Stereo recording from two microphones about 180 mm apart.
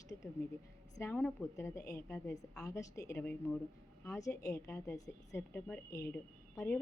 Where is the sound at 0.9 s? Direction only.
10° left (ahead or behind).